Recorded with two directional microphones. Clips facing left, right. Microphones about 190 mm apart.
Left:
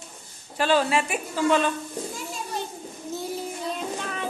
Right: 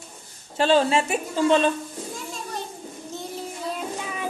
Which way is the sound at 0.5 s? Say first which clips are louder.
Right 3 dB; 25° right (ahead or behind).